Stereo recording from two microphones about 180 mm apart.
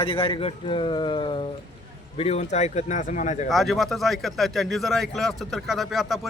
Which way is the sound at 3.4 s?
Centre (ahead or behind).